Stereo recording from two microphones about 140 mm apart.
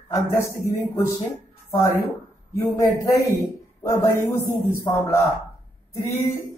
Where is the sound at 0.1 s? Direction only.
20° left (ahead or behind).